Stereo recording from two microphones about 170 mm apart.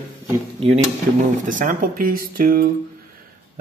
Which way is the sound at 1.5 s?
50° right (ahead or behind).